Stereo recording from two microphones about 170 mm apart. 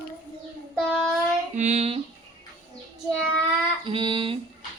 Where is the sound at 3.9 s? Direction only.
30° right (ahead or behind).